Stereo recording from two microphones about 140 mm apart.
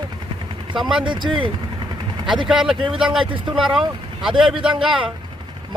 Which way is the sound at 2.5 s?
5° right (ahead or behind).